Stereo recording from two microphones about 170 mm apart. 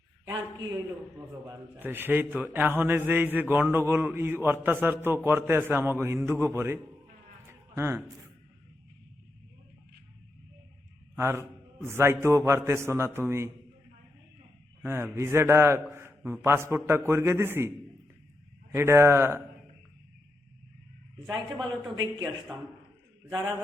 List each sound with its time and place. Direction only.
0.3 s a man's voice: 20° right (ahead or behind)
1.8 s a man's voice: 10° right (ahead or behind)
7.8 s a man's voice: 15° right (ahead or behind)
11.2 s a man's voice: 15° right (ahead or behind)
14.8 s a man's voice: 15° right (ahead or behind)
18.7 s a man's voice: 15° right (ahead or behind)
23.3 s a man's voice: 25° right (ahead or behind)